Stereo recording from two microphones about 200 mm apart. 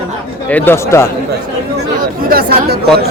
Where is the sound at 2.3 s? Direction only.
50° right (ahead or behind).